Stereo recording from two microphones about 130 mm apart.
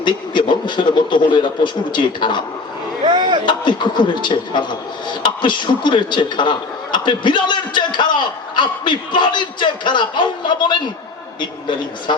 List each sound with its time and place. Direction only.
0.0 s a man's voice: 35° left (ahead or behind)
3.0 s a sound: 35° right (ahead or behind)
3.4 s a man's voice: 35° left (ahead or behind)